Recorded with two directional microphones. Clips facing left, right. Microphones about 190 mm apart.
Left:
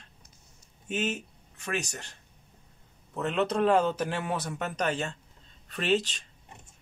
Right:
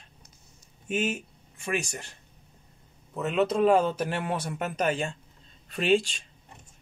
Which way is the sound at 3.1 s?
5° right (ahead or behind).